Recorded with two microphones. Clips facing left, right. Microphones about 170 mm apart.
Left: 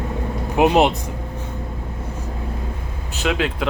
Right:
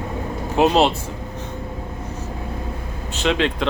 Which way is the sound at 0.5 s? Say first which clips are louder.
Left 1 dB; 15° left (ahead or behind).